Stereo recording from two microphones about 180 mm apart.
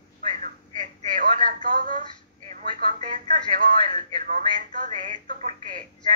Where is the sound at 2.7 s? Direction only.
45° right (ahead or behind).